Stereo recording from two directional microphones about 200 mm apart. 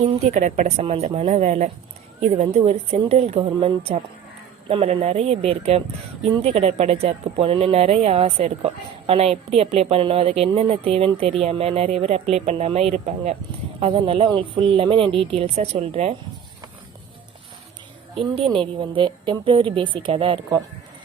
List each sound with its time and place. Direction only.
0.0 s speech: 35° right (ahead or behind)
18.5 s speech: 25° right (ahead or behind)